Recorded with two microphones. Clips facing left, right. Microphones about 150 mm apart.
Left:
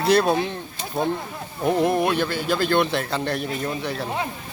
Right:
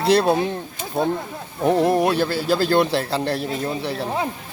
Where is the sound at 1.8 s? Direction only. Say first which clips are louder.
Right 2 dB; 35° right (ahead or behind).